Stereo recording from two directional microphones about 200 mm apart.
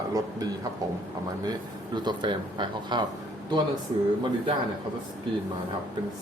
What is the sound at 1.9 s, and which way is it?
Speech, 20° right (ahead or behind).